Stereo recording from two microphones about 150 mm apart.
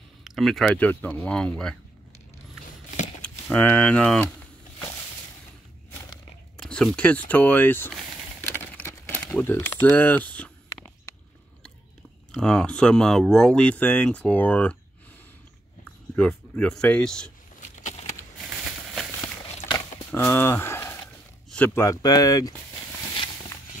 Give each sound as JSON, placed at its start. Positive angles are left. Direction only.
{"t": 0.2, "sound": "speech", "side_deg": 0}
{"t": 3.2, "sound": "speech", "side_deg": 10}
{"t": 6.5, "sound": "speech", "side_deg": 5}
{"t": 7.9, "sound": "a sound", "side_deg": 10}
{"t": 9.3, "sound": "speech", "side_deg": 15}
{"t": 12.3, "sound": "speech", "side_deg": 5}
{"t": 15.8, "sound": "speech", "side_deg": 10}
{"t": 17.6, "sound": "a sound", "side_deg": 55}
{"t": 20.1, "sound": "a sound", "side_deg": 15}
{"t": 21.5, "sound": "speech", "side_deg": 10}